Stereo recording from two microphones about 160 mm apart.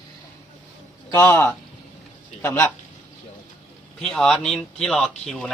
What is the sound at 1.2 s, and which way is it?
Speech, 10° left (ahead or behind).